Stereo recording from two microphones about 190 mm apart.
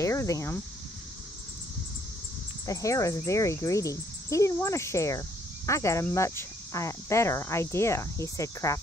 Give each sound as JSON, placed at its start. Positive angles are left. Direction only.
{"t": 0.0, "sound": "speech", "side_deg": 15}
{"t": 2.6, "sound": "speech", "side_deg": 15}